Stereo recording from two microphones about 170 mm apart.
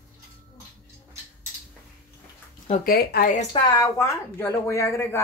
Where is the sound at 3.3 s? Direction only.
35° left (ahead or behind).